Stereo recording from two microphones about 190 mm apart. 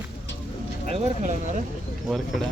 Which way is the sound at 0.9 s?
40° right (ahead or behind).